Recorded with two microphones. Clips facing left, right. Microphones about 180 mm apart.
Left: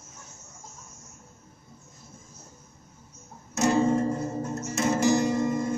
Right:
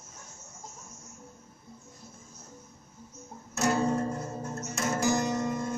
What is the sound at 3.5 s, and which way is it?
Music, 20° left (ahead or behind).